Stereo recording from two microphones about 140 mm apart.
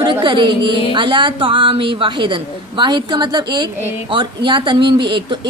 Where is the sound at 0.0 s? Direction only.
35° right (ahead or behind).